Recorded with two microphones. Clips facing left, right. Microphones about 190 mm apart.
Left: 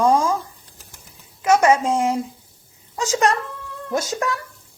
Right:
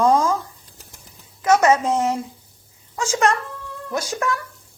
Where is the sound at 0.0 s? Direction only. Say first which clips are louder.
Even; 10° left (ahead or behind).